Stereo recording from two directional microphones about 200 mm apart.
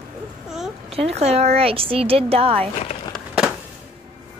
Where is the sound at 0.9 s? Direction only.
30° right (ahead or behind).